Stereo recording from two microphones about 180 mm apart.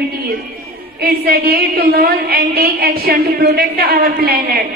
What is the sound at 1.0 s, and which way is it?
A woman's voice, 60° right (ahead or behind).